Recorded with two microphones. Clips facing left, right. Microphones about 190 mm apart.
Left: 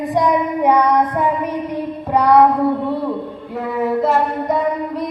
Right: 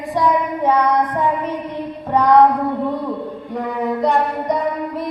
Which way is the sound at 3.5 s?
5° left (ahead or behind).